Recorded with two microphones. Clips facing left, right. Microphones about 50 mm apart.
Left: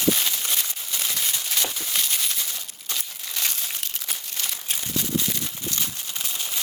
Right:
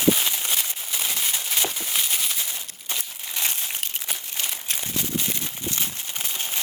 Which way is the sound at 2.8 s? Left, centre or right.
Right.